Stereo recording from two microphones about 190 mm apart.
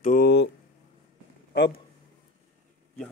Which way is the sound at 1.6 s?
65° left (ahead or behind).